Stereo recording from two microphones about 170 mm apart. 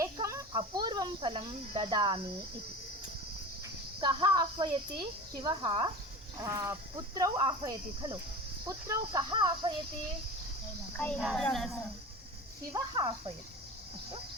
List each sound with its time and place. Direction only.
0.0 s a sound: 20° right (ahead or behind)
0.5 s speech: 25° right (ahead or behind)
4.0 s speech: 25° right (ahead or behind)
10.9 s a child's voice: 5° left (ahead or behind)
12.7 s speech: 25° right (ahead or behind)